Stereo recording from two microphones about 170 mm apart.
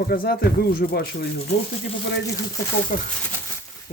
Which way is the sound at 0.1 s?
60° left (ahead or behind).